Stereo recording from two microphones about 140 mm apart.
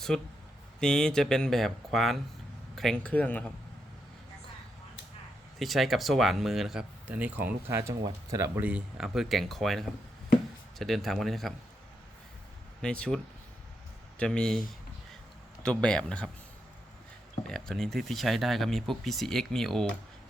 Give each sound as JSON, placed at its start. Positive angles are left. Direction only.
{"t": 0.1, "sound": "speech", "side_deg": 5}
{"t": 5.5, "sound": "speech", "side_deg": 0}
{"t": 8.6, "sound": "speech", "side_deg": -5}
{"t": 12.8, "sound": "speech", "side_deg": 5}
{"t": 15.6, "sound": "speech", "side_deg": 5}
{"t": 17.5, "sound": "speech", "side_deg": 5}